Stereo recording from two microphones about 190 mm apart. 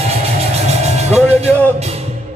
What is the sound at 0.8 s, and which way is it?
Vehicle, 35° right (ahead or behind).